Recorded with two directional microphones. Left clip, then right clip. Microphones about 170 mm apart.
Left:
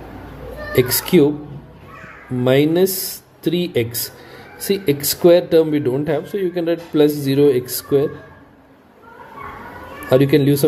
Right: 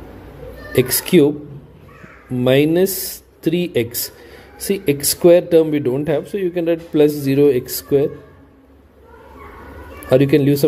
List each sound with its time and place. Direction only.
0.7 s speech: 25° right (ahead or behind)
2.3 s speech: 25° right (ahead or behind)
10.0 s speech: 25° right (ahead or behind)